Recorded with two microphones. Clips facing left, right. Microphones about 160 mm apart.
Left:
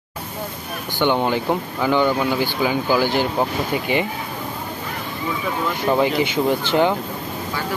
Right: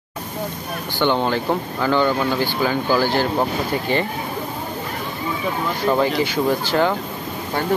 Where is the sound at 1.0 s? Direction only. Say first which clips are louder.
Even; 15° left (ahead or behind).